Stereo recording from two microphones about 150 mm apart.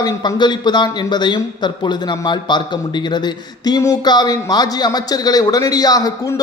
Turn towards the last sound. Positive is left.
turn(degrees=20)  # may be behind; listen again after turning